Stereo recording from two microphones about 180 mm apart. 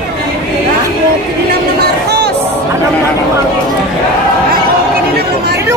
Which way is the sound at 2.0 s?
65° right (ahead or behind).